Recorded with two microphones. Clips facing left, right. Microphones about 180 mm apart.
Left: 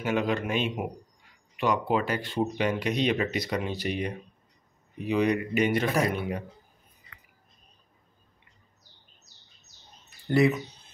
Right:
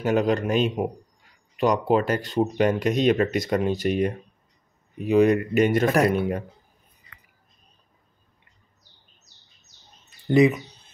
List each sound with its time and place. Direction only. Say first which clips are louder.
0.0 s a man's voice: right 5 dB; 40° right (ahead or behind)
5.9 s speech: right 6 dB; 55° right (ahead or behind)
10.0 s bird: right 5 dB; 20° right (ahead or behind)